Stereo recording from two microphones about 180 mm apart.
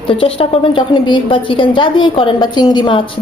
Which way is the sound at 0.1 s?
30° left (ahead or behind).